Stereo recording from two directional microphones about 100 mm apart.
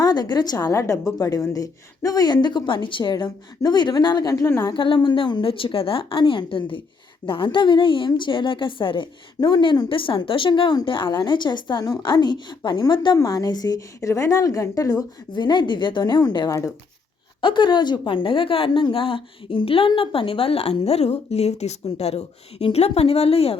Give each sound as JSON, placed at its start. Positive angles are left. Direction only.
{"t": 0.0, "sound": "a woman's voice", "side_deg": 45}
{"t": 4.3, "sound": "a woman's voice", "side_deg": 30}
{"t": 4.6, "sound": "a woman's voice", "side_deg": 55}
{"t": 13.1, "sound": "a woman's voice", "side_deg": 40}
{"t": 15.3, "sound": "a woman's voice", "side_deg": 45}